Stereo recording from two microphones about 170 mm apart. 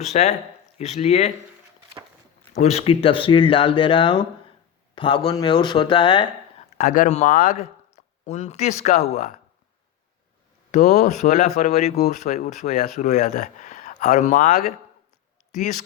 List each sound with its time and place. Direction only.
0.0 s speech: 40° left (ahead or behind)
2.6 s speech: 40° left (ahead or behind)
6.7 s speech: 50° left (ahead or behind)
10.7 s speech: 45° left (ahead or behind)